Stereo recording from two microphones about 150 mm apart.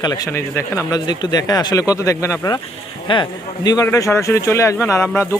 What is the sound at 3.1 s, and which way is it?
Speech, 35° left (ahead or behind).